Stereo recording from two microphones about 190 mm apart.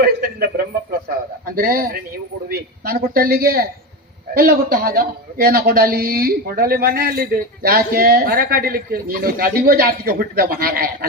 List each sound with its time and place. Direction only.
0.0 s speech: 50° right (ahead or behind)